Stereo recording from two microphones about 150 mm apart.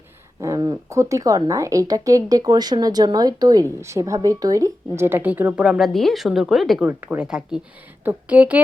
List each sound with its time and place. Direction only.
0.3 s speech: 20° right (ahead or behind)